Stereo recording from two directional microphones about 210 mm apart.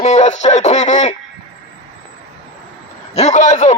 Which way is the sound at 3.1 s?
35° left (ahead or behind).